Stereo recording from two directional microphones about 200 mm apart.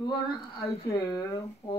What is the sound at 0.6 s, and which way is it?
Speech, 30° left (ahead or behind).